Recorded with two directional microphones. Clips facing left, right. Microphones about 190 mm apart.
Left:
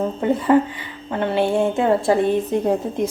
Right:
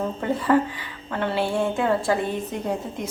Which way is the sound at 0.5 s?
20° left (ahead or behind).